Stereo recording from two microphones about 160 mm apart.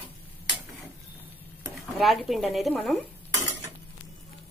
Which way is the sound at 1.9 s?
Centre (ahead or behind).